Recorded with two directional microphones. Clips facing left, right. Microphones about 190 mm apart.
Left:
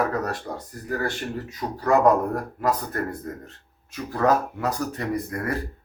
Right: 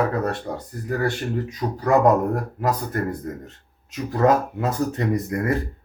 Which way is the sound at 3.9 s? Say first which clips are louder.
Right 3 dB; 25° right (ahead or behind).